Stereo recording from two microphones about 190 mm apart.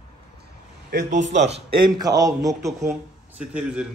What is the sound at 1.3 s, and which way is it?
Speech, 35° right (ahead or behind).